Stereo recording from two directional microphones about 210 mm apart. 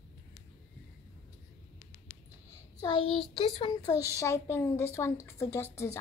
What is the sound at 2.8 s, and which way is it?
A child's voice, 25° left (ahead or behind).